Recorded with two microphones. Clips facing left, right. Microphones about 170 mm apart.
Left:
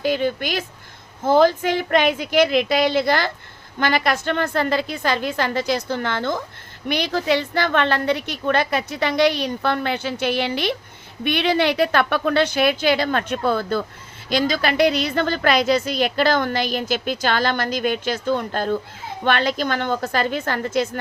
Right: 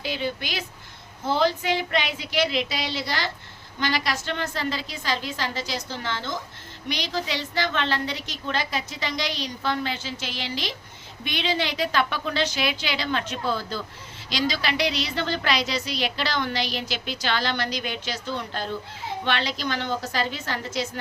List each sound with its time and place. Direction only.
0.0 s a woman's voice: 50° left (ahead or behind)